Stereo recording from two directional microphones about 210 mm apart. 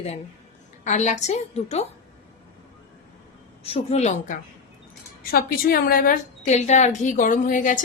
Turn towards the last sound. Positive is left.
turn(degrees=40)  # may be behind; listen again after turning